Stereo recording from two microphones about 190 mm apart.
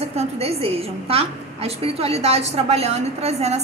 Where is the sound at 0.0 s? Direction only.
30° right (ahead or behind).